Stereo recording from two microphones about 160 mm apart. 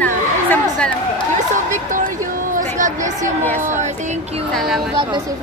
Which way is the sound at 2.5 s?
55° right (ahead or behind).